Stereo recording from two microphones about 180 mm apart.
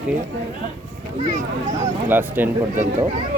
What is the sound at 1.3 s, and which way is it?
Speech, 40° right (ahead or behind).